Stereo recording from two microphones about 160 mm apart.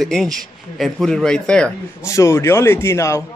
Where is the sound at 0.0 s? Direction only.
5° left (ahead or behind).